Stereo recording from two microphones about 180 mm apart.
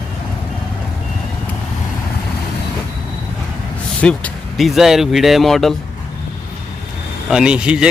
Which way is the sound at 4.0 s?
5° left (ahead or behind).